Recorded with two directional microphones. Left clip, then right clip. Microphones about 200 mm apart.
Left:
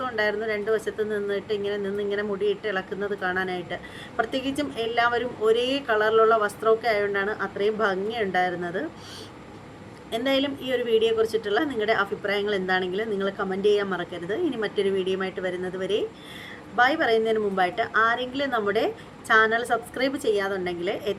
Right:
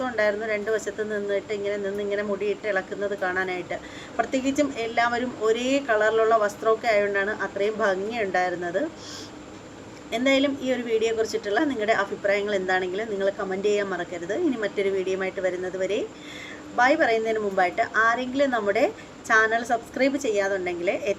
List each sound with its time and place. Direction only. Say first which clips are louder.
0.0 s speech: right 1 dB; 5° left (ahead or behind)
10.1 s a woman's voice: right 3 dB; 5° left (ahead or behind)